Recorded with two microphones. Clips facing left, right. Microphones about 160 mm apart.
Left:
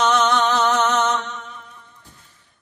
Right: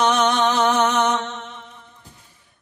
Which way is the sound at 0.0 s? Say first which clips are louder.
Even; 15° right (ahead or behind).